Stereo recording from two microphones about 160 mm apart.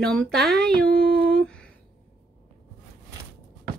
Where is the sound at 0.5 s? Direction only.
80° right.